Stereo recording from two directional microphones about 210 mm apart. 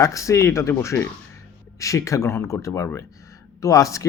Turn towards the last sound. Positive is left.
turn(degrees=15)  # may be behind; listen again after turning